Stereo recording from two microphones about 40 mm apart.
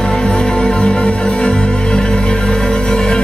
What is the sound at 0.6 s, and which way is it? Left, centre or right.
Music, left.